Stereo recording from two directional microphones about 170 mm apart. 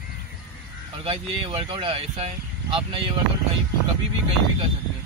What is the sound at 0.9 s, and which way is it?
Speech, 30° right (ahead or behind).